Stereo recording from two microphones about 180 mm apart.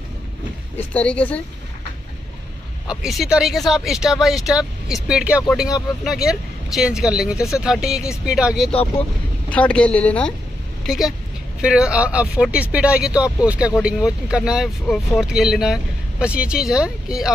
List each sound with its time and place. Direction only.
0.7 s speech: 5° left (ahead or behind)
2.9 s speech: centre (ahead or behind)
9.5 s speech: 5° left (ahead or behind)